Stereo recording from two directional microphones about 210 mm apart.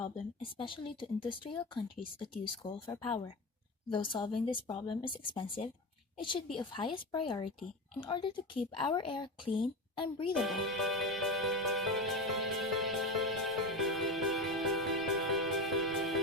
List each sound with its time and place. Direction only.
0.5 s speech: 25° left (ahead or behind)
10.3 s music: centre (ahead or behind)